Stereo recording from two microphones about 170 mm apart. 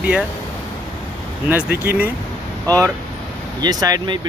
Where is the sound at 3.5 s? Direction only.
20° right (ahead or behind).